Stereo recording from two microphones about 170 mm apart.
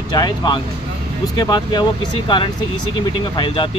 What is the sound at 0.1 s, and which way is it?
Speech, 25° left (ahead or behind).